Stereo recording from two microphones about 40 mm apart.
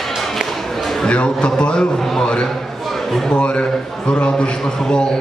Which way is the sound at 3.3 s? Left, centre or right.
Left.